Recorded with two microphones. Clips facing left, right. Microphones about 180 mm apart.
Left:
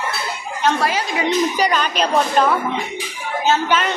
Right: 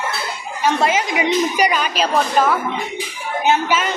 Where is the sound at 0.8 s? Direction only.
20° right (ahead or behind); by 2.5 s 5° right (ahead or behind).